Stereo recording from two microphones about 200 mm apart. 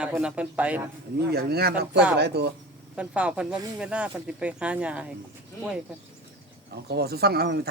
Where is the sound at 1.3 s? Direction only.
50° right (ahead or behind).